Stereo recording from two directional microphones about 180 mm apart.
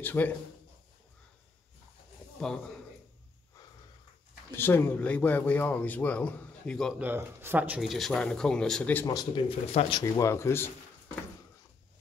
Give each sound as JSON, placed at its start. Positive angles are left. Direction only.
{"t": 0.0, "sound": "a man's voice", "side_deg": 10}
{"t": 4.5, "sound": "a man's voice", "side_deg": 10}
{"t": 7.0, "sound": "speech", "side_deg": -10}
{"t": 9.0, "sound": "speech", "side_deg": 20}
{"t": 9.7, "sound": "a man's voice", "side_deg": 30}